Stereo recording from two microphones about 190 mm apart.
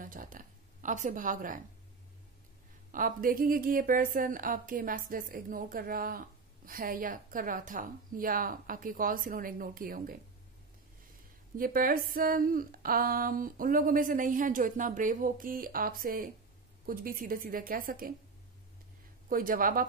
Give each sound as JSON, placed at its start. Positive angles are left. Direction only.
{"t": 0.0, "sound": "speech", "side_deg": -45}
{"t": 2.9, "sound": "a woman's voice", "side_deg": -45}
{"t": 11.5, "sound": "a woman's voice", "side_deg": -50}
{"t": 19.2, "sound": "a woman's voice", "side_deg": -45}